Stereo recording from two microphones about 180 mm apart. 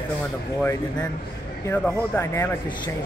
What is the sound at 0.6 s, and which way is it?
Speech, 5° left (ahead or behind).